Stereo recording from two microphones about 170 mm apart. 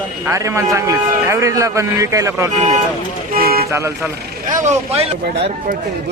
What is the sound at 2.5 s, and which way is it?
Speech, 45° right (ahead or behind).